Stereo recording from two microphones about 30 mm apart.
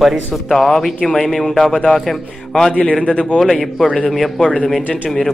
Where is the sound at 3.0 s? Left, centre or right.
Left.